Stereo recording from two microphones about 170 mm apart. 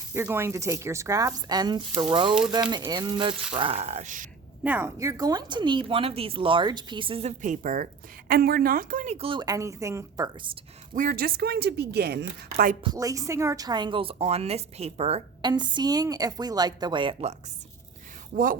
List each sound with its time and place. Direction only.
0.1 s a woman's voice: 15° right (ahead or behind); by 4.3 s 45° right (ahead or behind)
4.6 s a woman's voice: 10° right (ahead or behind); by 9.1 s 55° right (ahead or behind)
9.2 s a woman's voice: 30° right (ahead or behind)
10.9 s speech: 55° right (ahead or behind); by 12.2 s 75° right (ahead or behind)
12.5 s speech: 60° right (ahead or behind)
12.8 s a woman's voice: 20° right (ahead or behind)